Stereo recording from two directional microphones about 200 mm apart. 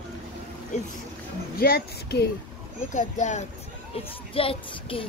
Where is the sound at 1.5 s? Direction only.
50° left (ahead or behind).